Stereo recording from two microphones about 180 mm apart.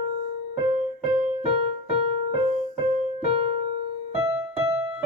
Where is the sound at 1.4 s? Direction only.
35° right (ahead or behind).